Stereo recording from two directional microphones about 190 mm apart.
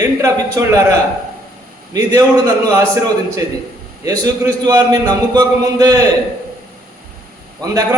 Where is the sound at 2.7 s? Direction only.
15° right (ahead or behind).